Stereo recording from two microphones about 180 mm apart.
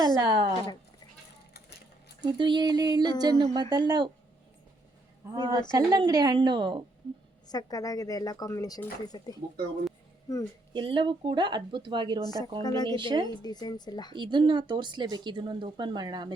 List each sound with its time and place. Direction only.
0.0 s speech: 25° right (ahead or behind)
2.2 s speech: 25° right (ahead or behind)
5.3 s speech: 20° right (ahead or behind)
7.4 s speech: 20° left (ahead or behind)
10.8 s speech: 25° right (ahead or behind)
12.2 s speech: 20° left (ahead or behind)
13.0 s speech: 25° right (ahead or behind)
13.2 s speech: 20° left (ahead or behind)
14.2 s speech: 25° right (ahead or behind)